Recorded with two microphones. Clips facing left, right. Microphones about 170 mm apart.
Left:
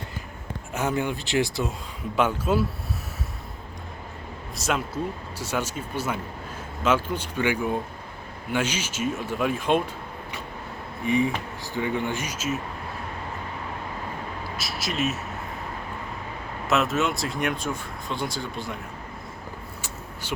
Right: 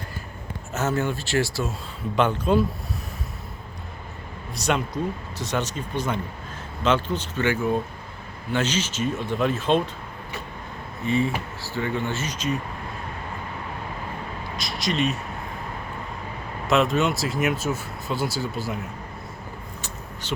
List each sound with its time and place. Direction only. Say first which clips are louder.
0.7 s speech: right 1 dB; 15° left (ahead or behind)
2.1 s speech: right 2 dB; 5° left (ahead or behind)
4.5 s speech: right 2 dB; centre (ahead or behind)
11.0 s speech: even; 15° left (ahead or behind)
14.5 s a sound: right 5 dB; 5° left (ahead or behind)
16.6 s speech: right 3 dB; centre (ahead or behind)